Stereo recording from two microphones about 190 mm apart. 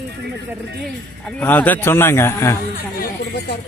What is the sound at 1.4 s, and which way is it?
A man's voice, 10° left (ahead or behind).